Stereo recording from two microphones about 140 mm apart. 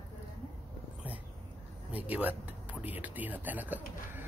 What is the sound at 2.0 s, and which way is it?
Speech, 10° right (ahead or behind).